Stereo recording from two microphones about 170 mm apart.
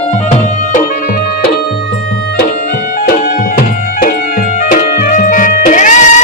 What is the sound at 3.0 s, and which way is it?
Music, 55° left (ahead or behind).